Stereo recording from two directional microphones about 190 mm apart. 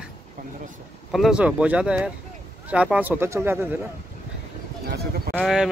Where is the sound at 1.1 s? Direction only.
Centre (ahead or behind).